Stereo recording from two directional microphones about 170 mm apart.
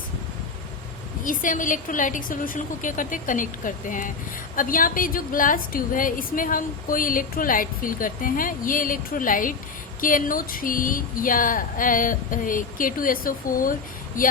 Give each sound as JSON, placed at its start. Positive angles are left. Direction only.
{"t": 1.2, "sound": "a woman's voice", "side_deg": 50}